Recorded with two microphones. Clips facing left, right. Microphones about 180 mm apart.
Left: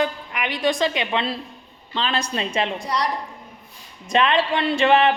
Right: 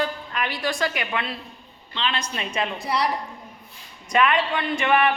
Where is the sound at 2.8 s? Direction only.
5° right (ahead or behind).